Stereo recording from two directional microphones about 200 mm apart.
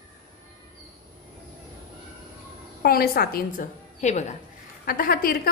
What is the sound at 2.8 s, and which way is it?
A woman's voice, 50° left (ahead or behind).